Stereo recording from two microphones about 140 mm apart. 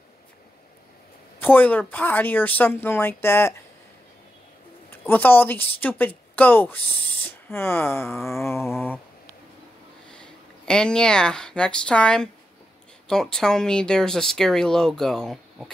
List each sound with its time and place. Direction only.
1.4 s speech: 15° left (ahead or behind)
5.0 s a woman's voice: 15° left (ahead or behind)
8.3 s a sound: 20° left (ahead or behind)
10.1 s speech: 5° left (ahead or behind)